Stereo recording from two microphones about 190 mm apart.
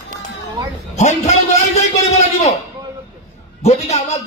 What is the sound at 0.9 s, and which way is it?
A man's voice, 35° left (ahead or behind).